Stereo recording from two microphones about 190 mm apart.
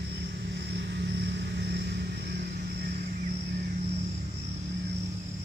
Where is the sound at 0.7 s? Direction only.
60° right (ahead or behind).